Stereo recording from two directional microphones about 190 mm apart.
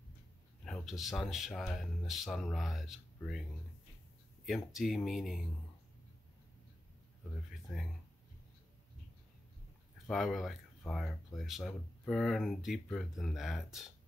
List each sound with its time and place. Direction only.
0.7 s speech: centre (ahead or behind)
4.7 s speech: centre (ahead or behind)
7.7 s speech: centre (ahead or behind)
10.0 s speech: centre (ahead or behind)